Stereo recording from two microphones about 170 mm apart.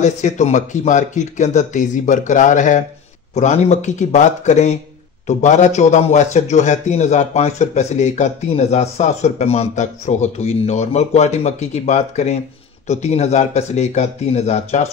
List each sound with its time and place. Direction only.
0.0 s a man's voice: 45° left (ahead or behind)